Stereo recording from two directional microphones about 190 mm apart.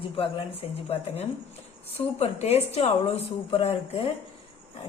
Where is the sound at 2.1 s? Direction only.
35° left (ahead or behind).